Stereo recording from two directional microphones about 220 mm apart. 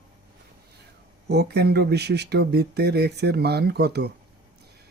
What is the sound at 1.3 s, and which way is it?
Speech, 50° right (ahead or behind).